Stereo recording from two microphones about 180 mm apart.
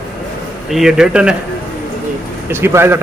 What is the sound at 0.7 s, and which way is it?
Speech, 5° right (ahead or behind).